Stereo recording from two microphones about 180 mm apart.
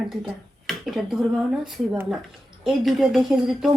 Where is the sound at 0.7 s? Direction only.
Centre (ahead or behind).